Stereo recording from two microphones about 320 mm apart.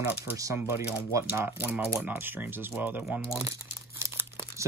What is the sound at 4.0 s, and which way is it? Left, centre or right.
Crumpling, centre.